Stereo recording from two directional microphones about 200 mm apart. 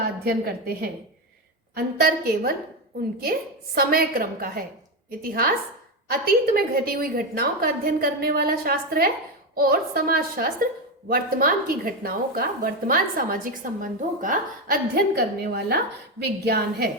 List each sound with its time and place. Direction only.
0.3 s a woman's voice: 50° right (ahead or behind)
3.8 s a woman's voice: 45° right (ahead or behind)